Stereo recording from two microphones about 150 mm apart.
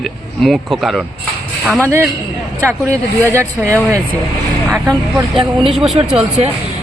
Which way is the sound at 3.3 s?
20° right (ahead or behind).